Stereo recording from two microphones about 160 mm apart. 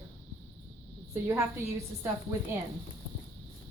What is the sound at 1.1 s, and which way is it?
Speech, 15° right (ahead or behind).